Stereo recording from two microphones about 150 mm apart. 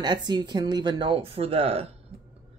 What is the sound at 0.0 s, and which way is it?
Speech, 30° right (ahead or behind).